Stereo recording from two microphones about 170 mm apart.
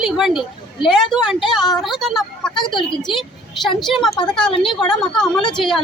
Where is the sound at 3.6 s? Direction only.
Centre (ahead or behind).